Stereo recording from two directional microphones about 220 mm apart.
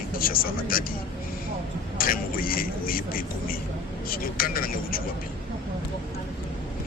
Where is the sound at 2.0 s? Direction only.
40° left (ahead or behind).